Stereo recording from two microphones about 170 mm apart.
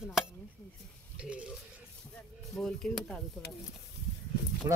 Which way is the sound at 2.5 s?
5° left (ahead or behind).